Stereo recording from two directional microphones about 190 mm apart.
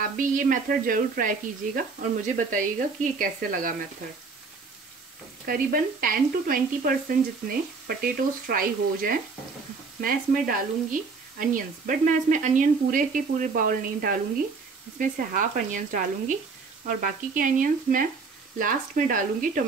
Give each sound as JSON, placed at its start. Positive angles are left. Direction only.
{"t": 0.0, "sound": "speech", "side_deg": -45}
{"t": 5.4, "sound": "speech", "side_deg": -50}